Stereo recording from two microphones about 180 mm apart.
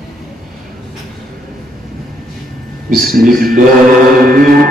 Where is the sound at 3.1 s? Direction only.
50° right (ahead or behind).